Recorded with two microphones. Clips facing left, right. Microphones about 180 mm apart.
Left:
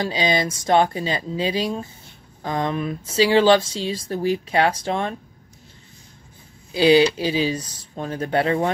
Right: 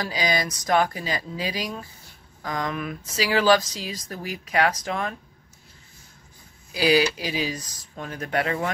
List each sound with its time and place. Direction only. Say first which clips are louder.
0.0 s speech: left 4 dB; 25° left (ahead or behind)
6.7 s speech: left 6 dB; 25° left (ahead or behind)